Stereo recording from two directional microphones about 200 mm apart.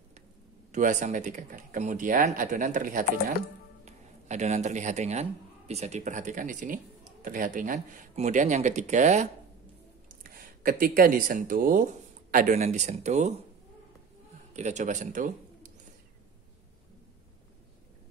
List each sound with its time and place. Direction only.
0.7 s a man's voice: 40° right (ahead or behind)
14.5 s speech: 35° right (ahead or behind)